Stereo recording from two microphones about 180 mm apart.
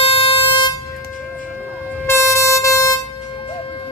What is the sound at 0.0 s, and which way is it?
Air horn, 30° left (ahead or behind).